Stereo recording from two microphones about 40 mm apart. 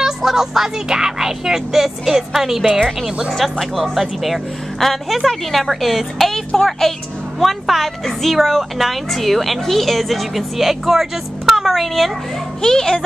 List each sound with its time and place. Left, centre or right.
0.0 s speech: centre
3.5 s a child's voice: centre
6.1 s a woman's voice: centre
12.6 s a child's voice: centre